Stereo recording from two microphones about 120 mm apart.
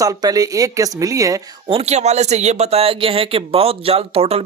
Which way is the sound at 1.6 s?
60° right (ahead or behind).